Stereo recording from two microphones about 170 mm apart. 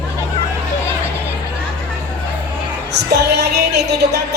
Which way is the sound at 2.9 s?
80° right.